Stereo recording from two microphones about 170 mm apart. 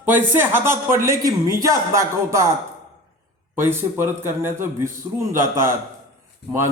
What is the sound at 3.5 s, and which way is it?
Speech, 15° right (ahead or behind).